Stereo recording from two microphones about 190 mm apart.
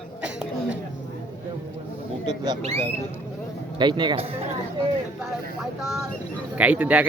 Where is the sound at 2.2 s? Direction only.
25° right (ahead or behind).